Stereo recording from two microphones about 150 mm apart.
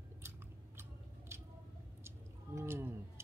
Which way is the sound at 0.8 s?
15° right (ahead or behind).